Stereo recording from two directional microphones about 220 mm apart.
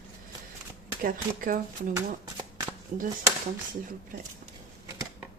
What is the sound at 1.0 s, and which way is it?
Speech, 40° right (ahead or behind).